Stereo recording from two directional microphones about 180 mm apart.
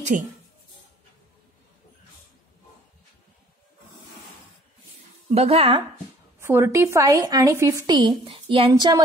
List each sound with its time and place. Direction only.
0.1 s speech: 50° right (ahead or behind)
5.3 s speech: 35° right (ahead or behind)
6.4 s a woman's voice: 15° right (ahead or behind)